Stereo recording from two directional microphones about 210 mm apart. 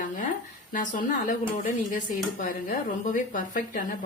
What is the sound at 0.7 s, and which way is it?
Speech, 40° left (ahead or behind).